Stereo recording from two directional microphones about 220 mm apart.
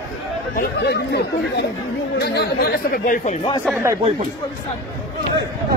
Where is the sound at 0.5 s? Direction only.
50° left (ahead or behind).